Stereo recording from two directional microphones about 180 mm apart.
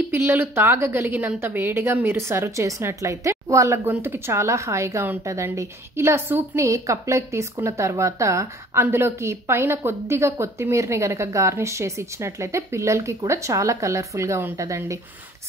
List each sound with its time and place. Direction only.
0.1 s a woman's voice: 10° right (ahead or behind)